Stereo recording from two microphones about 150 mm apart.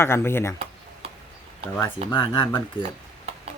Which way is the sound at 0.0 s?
15° left (ahead or behind).